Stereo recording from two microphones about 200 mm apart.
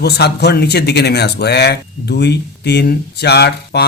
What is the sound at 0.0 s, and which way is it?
Speech, 55° left (ahead or behind).